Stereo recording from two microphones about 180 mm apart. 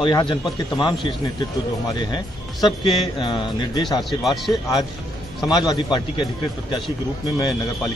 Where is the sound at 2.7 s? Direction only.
25° left (ahead or behind).